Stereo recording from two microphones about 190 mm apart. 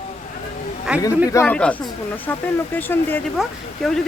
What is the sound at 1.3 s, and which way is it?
Speech, 10° left (ahead or behind).